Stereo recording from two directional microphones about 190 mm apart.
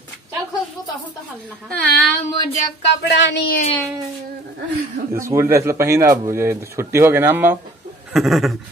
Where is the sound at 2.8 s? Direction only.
65° left (ahead or behind).